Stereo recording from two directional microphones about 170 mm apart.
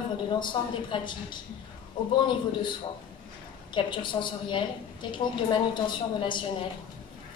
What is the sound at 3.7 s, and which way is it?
A woman's voice, 30° left (ahead or behind).